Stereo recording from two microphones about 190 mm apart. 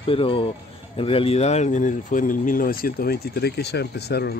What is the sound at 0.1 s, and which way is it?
Speech, 30° left (ahead or behind).